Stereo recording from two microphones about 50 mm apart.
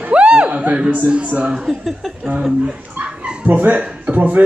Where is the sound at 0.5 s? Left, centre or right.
Right.